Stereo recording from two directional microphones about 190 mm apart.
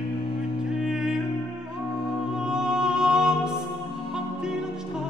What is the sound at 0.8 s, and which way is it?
Music, 5° right (ahead or behind).